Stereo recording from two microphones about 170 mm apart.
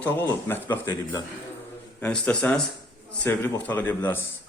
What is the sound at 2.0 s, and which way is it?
A man's voice, 10° left (ahead or behind).